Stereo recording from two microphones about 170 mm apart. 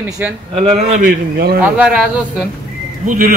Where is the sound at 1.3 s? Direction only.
65° right (ahead or behind).